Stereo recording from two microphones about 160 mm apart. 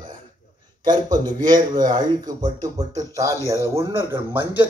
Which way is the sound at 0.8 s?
25° right (ahead or behind).